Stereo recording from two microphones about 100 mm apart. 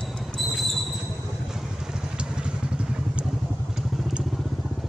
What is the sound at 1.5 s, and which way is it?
Vehicle, 5° right (ahead or behind).